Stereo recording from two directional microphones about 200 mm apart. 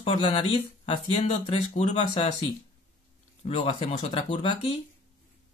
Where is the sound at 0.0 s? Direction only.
30° left (ahead or behind).